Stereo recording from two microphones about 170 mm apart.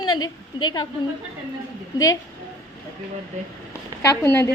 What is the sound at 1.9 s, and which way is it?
Speech, 20° left (ahead or behind).